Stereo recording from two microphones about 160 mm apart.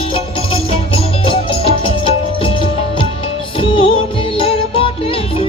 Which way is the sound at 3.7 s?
30° left (ahead or behind).